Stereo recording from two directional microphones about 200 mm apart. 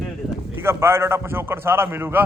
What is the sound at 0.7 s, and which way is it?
A man's voice, 10° right (ahead or behind).